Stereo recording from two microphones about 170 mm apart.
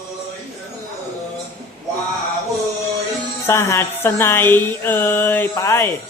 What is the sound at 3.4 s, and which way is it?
Speech, 15° left (ahead or behind).